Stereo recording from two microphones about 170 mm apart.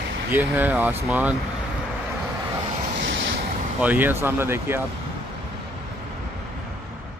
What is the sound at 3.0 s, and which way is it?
Waves, 90° right.